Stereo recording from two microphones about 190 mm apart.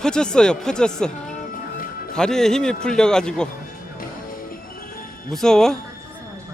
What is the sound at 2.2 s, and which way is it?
A man's voice, 5° left (ahead or behind).